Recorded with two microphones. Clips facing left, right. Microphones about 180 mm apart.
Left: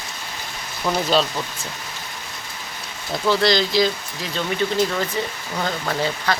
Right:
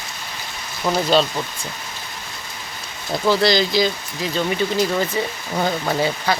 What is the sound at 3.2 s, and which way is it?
Speech, centre (ahead or behind).